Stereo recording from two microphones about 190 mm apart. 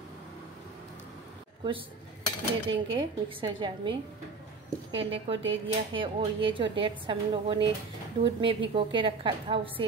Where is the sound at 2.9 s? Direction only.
25° right (ahead or behind).